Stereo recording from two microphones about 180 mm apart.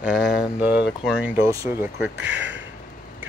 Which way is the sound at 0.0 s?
5° right (ahead or behind).